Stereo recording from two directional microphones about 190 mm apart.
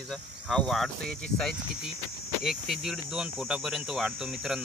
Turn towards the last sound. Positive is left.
turn(degrees=0)  # may be behind; listen again after turning